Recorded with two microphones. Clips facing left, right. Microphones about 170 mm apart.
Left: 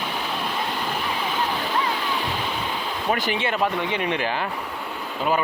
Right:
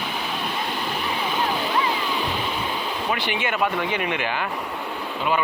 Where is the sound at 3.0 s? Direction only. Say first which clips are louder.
Left 3 dB; 40° left (ahead or behind).